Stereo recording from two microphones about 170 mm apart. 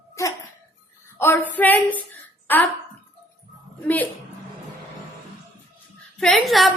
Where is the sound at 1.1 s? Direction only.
15° left (ahead or behind).